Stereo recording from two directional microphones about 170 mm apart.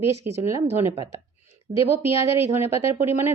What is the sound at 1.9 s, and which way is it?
A woman's voice, 15° right (ahead or behind).